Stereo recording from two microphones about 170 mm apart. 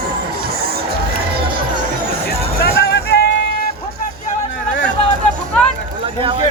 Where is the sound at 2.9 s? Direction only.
75° left (ahead or behind).